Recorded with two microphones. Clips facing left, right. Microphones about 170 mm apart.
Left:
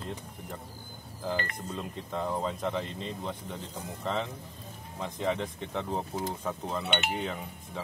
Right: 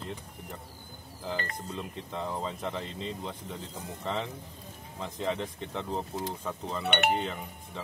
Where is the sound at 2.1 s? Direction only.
5° left (ahead or behind).